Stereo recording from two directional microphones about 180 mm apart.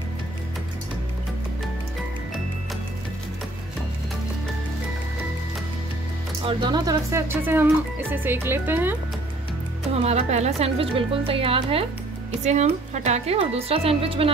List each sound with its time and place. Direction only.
6.4 s speech: 25° right (ahead or behind)
10.0 s speech: 35° right (ahead or behind)